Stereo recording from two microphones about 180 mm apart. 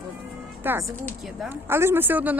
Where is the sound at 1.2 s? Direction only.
Centre (ahead or behind).